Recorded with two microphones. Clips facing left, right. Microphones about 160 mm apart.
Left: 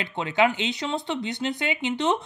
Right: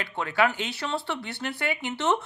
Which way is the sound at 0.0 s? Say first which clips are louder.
Left 2 dB; 20° left (ahead or behind).